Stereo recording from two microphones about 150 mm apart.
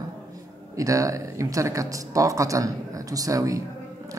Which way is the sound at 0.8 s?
20° right (ahead or behind).